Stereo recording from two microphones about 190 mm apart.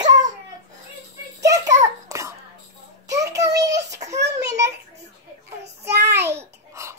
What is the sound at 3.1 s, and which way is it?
Child singing, 15° right (ahead or behind).